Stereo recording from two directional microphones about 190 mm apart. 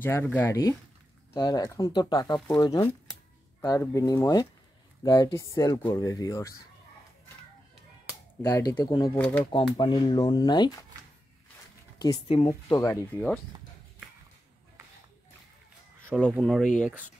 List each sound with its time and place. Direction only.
0.0 s speech: 10° left (ahead or behind)
8.4 s speech: 15° left (ahead or behind)
9.1 s speech: 10° left (ahead or behind)
9.4 s speech: 25° left (ahead or behind)
12.0 s speech: 20° left (ahead or behind)
16.3 s speech: centre (ahead or behind)